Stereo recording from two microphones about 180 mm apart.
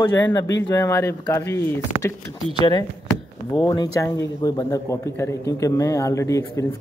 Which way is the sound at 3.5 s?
20° left (ahead or behind).